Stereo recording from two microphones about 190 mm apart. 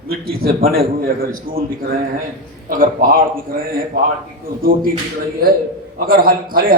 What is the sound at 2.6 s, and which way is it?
Speech, 50° right (ahead or behind).